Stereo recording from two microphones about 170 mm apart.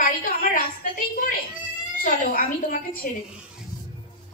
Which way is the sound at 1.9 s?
55° left (ahead or behind).